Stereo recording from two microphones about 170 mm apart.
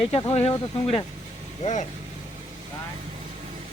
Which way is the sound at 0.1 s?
35° left (ahead or behind).